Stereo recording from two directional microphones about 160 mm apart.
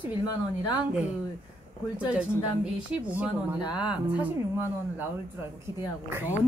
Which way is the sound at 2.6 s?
10° right (ahead or behind).